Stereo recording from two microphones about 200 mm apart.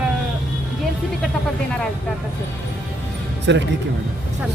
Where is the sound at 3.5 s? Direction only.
65° right (ahead or behind).